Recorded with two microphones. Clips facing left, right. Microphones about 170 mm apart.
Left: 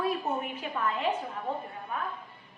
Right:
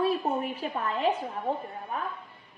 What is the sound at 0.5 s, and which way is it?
Speech, 35° right (ahead or behind).